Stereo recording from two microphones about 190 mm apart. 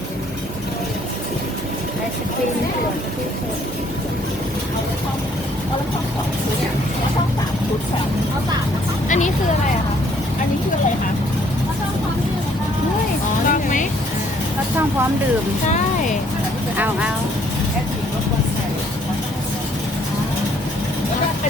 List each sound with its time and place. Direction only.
9.0 s speech: 40° left (ahead or behind)
13.5 s vehicle: 45° left (ahead or behind)
16.7 s speech: 10° right (ahead or behind)